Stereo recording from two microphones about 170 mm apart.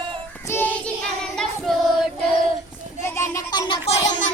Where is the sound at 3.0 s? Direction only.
15° left (ahead or behind).